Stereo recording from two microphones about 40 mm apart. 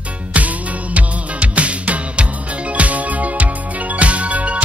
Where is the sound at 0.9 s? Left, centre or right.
Right.